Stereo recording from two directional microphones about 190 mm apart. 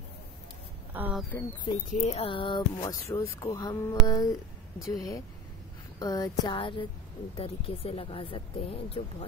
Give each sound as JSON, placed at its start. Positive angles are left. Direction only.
{"t": 0.9, "sound": "speech", "side_deg": -10}
{"t": 2.0, "sound": "speech", "side_deg": 35}